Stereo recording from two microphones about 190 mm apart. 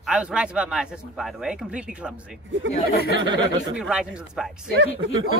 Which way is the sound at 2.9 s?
55° left (ahead or behind).